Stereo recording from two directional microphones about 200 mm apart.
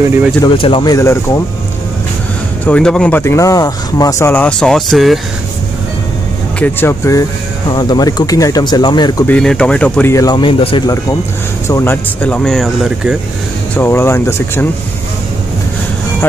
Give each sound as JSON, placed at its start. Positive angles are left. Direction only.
{"t": 0.4, "sound": "speech", "side_deg": 25}
{"t": 2.6, "sound": "speech", "side_deg": 5}
{"t": 6.6, "sound": "speech", "side_deg": 10}
{"t": 9.2, "sound": "speech", "side_deg": 5}
{"t": 11.6, "sound": "speech", "side_deg": 15}
{"t": 13.7, "sound": "speech", "side_deg": 10}